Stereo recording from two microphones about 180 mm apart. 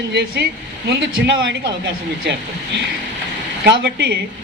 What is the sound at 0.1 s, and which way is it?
Speech, 70° right (ahead or behind).